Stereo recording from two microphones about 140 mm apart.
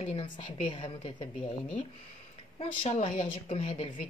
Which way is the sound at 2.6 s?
50° left (ahead or behind).